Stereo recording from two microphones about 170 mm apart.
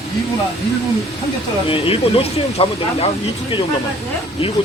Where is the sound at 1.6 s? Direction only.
35° left (ahead or behind).